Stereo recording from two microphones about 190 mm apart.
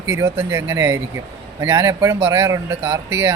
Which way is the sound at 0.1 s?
15° right (ahead or behind).